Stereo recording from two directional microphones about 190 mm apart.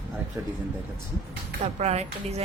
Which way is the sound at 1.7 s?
35° right (ahead or behind).